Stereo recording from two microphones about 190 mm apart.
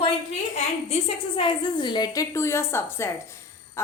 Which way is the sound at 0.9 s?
25° left (ahead or behind).